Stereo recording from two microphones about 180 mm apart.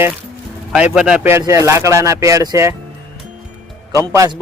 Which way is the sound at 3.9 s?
15° right (ahead or behind).